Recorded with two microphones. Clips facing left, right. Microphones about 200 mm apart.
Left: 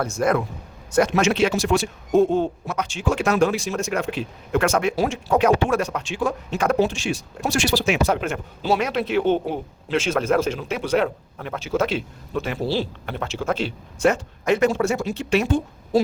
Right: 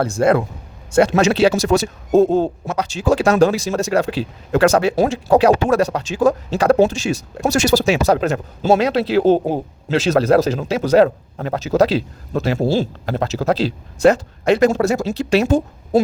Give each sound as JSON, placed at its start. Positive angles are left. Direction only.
{"t": 0.0, "sound": "speech", "side_deg": -30}